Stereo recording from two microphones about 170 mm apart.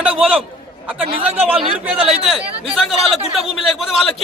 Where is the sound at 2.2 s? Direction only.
Centre (ahead or behind).